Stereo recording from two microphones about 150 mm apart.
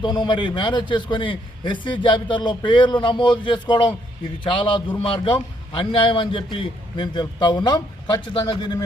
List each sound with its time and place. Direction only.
0.0 s a man's voice: 30° left (ahead or behind)